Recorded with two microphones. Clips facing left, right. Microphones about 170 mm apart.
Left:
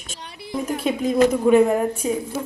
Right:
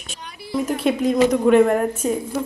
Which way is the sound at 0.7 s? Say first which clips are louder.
Right 1 dB; 5° left (ahead or behind).